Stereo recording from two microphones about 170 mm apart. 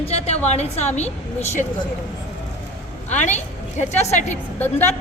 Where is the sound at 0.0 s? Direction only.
40° left (ahead or behind).